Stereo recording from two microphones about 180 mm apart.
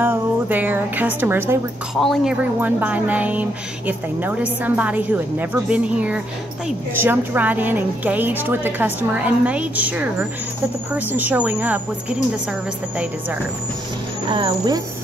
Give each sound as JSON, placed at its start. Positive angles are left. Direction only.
{"t": 0.0, "sound": "speech", "side_deg": -10}
{"t": 2.0, "sound": "speech", "side_deg": 0}
{"t": 2.6, "sound": "speech", "side_deg": -10}
{"t": 12.9, "sound": "speech", "side_deg": -5}
{"t": 14.3, "sound": "speech", "side_deg": -25}